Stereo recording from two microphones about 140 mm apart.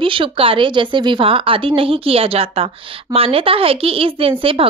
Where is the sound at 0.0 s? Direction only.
40° right (ahead or behind).